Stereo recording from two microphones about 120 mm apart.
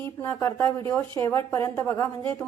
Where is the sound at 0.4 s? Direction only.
20° left (ahead or behind).